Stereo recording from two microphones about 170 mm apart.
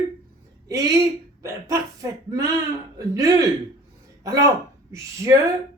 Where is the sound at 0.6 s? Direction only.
20° right (ahead or behind).